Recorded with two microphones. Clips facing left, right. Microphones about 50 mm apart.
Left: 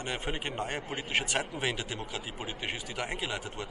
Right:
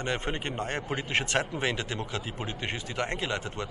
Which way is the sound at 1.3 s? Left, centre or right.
Centre.